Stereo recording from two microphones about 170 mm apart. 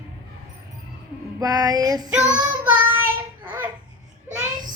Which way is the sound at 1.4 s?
20° right (ahead or behind).